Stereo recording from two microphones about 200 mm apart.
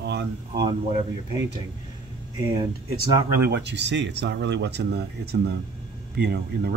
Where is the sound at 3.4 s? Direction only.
60° right (ahead or behind).